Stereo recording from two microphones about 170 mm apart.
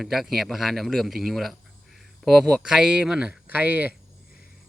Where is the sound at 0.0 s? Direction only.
Centre (ahead or behind).